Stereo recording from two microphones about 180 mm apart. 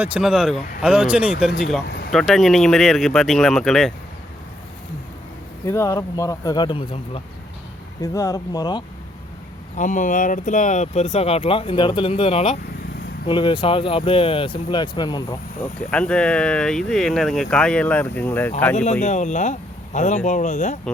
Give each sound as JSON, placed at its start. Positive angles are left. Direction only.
{"t": 0.0, "sound": "speech", "side_deg": -5}
{"t": 1.9, "sound": "a sound", "side_deg": 60}
{"t": 2.1, "sound": "speech", "side_deg": 0}
{"t": 5.6, "sound": "speech", "side_deg": 15}
{"t": 8.0, "sound": "speech", "side_deg": 20}
{"t": 9.7, "sound": "speech", "side_deg": 45}
{"t": 15.6, "sound": "speech", "side_deg": 5}
{"t": 19.0, "sound": "speech", "side_deg": 40}